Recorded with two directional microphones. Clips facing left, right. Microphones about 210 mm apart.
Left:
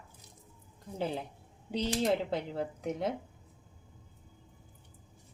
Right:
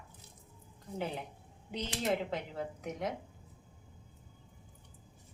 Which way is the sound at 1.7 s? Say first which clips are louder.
Left 5 dB; 35° left (ahead or behind).